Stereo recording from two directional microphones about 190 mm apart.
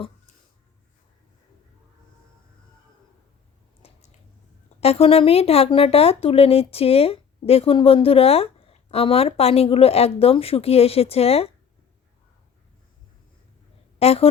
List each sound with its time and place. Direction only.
3.8 s a sound: 30° left (ahead or behind)
4.8 s speech: 30° left (ahead or behind)
14.0 s speech: 30° left (ahead or behind)